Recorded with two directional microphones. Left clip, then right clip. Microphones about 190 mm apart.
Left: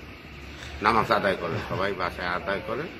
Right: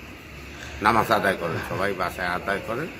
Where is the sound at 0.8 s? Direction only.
50° right (ahead or behind).